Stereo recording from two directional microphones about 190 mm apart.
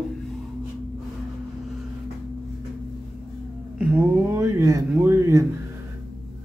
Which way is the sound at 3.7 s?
5° right (ahead or behind).